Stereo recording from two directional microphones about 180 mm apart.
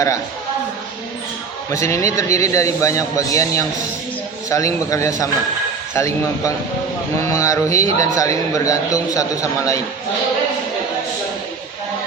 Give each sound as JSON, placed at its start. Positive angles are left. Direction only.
{"t": 1.7, "sound": "a man's voice", "side_deg": 15}